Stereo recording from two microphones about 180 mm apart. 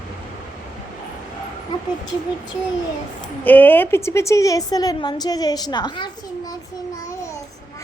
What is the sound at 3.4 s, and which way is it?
A woman's voice, 10° left (ahead or behind).